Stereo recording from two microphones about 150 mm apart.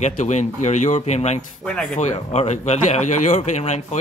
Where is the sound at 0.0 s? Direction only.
50° left (ahead or behind).